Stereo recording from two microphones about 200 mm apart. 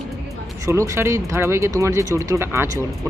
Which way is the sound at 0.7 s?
15° right (ahead or behind).